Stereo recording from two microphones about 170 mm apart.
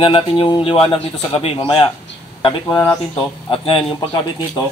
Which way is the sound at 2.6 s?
10° left (ahead or behind).